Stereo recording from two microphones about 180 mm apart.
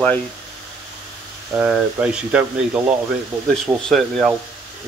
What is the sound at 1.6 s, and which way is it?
Speech, 5° right (ahead or behind).